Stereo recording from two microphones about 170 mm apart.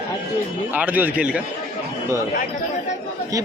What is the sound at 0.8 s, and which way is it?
Speech, 10° right (ahead or behind).